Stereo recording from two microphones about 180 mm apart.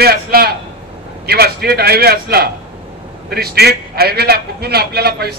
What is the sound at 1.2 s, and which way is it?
A man's voice, 60° right (ahead or behind).